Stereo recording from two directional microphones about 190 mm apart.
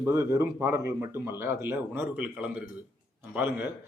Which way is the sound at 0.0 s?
15° right (ahead or behind).